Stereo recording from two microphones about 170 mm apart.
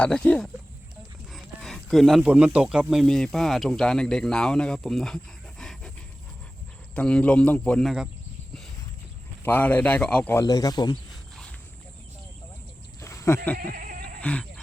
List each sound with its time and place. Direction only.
0.0 s speech: 5° left (ahead or behind)
6.9 s speech: 5° left (ahead or behind)
9.4 s speech: 10° left (ahead or behind)
13.0 s a sound: 15° left (ahead or behind)
13.7 s music: 55° right (ahead or behind)
14.2 s speech: 10° left (ahead or behind)